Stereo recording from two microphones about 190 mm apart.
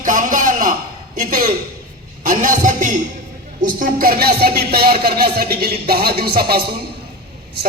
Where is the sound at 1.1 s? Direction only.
45° right (ahead or behind).